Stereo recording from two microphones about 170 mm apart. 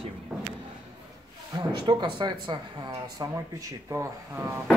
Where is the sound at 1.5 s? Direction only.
25° right (ahead or behind).